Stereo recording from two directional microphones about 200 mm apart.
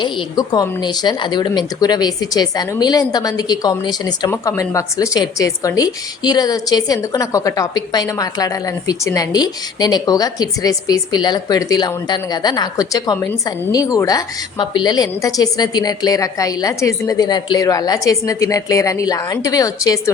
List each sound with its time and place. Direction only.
0.0 s a woman's voice: 20° left (ahead or behind)